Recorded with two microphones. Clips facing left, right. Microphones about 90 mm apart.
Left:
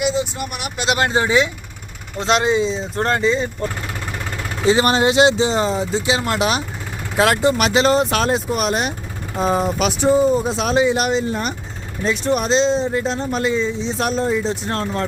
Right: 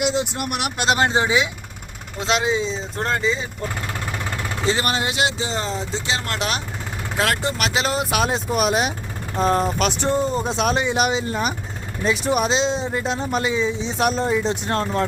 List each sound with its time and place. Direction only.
0.0 s speech: 90° right
0.9 s speech: 25° right (ahead or behind)
2.1 s speech: centre (ahead or behind)
4.6 s speech: 15° left (ahead or behind)
4.9 s speech: 30° left (ahead or behind); by 15.0 s centre (ahead or behind)